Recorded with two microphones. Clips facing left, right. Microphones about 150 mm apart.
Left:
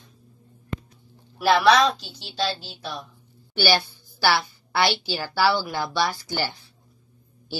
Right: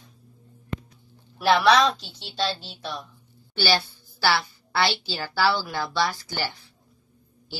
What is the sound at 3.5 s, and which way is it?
A woman's voice, 15° left (ahead or behind).